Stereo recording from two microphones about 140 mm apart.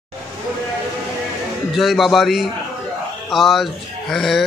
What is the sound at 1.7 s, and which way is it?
Speech, centre (ahead or behind).